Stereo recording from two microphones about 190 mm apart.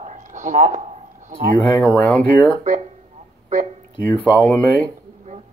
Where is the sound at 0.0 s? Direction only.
40° right (ahead or behind).